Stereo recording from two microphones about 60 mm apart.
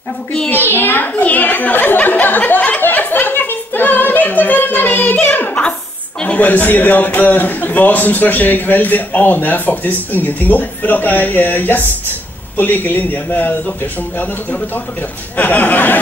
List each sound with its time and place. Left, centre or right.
0.5 s a child's voice: left
2.8 s music: left
6.2 s a man's voice: left
15.3 s a man's voice: left